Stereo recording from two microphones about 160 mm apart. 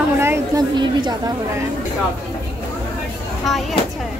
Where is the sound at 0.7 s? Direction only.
30° right (ahead or behind).